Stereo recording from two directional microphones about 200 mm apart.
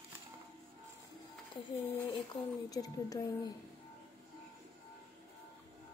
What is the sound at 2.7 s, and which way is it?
Speech, 20° left (ahead or behind).